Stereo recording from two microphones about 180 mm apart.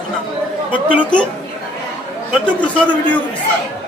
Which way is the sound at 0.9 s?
5° left (ahead or behind).